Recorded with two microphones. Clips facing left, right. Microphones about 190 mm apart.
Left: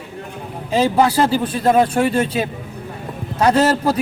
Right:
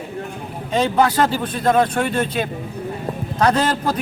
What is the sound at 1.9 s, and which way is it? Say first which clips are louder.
Speech: left 4 dB; 30° left (ahead or behind).